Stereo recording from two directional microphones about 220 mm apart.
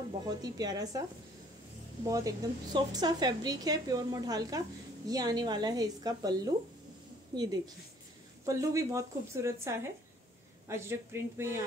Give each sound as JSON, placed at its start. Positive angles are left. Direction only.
{"t": 0.3, "sound": "a woman's voice", "side_deg": -15}
{"t": 2.0, "sound": "a woman's voice", "side_deg": -15}